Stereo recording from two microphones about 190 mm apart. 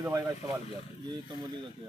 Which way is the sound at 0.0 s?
15° right (ahead or behind).